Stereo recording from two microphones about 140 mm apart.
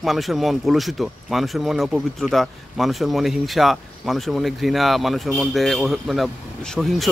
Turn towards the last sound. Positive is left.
turn(degrees=0)  # may be behind; listen again after turning